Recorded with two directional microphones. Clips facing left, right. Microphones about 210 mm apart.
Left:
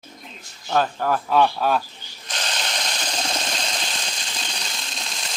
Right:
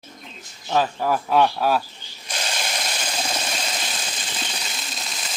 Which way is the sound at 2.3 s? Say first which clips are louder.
Right 1 dB; 10° right (ahead or behind).